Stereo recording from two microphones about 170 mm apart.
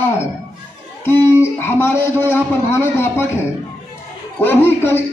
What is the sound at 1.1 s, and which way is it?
A man's voice, 15° left (ahead or behind).